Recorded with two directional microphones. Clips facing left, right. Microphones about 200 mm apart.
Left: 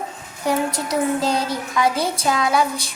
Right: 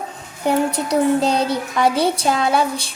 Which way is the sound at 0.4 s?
65° right (ahead or behind).